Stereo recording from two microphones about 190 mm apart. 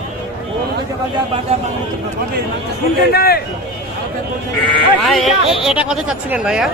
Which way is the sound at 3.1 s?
55° left (ahead or behind).